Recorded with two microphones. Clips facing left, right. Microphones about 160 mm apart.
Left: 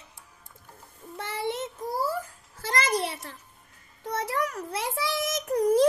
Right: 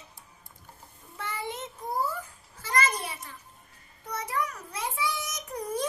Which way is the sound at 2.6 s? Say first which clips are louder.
Left 2 dB; 80° left.